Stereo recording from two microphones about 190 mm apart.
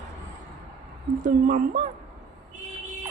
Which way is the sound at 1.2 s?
45° right (ahead or behind).